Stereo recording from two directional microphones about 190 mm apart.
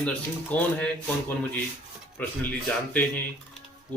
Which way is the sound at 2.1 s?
10° left (ahead or behind).